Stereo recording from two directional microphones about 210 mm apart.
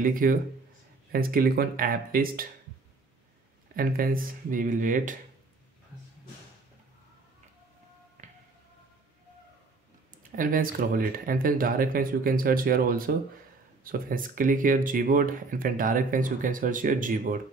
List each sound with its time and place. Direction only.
0.0 s speech: 40° right (ahead or behind)
3.7 s speech: 45° right (ahead or behind)
8.2 s music: 35° right (ahead or behind)
10.3 s speech: 40° right (ahead or behind)